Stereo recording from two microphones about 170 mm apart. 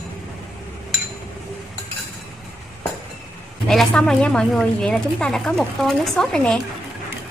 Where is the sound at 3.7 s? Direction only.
5° left (ahead or behind).